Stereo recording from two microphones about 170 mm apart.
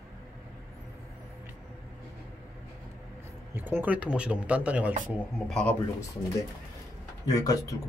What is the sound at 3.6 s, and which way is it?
Speech, 10° right (ahead or behind).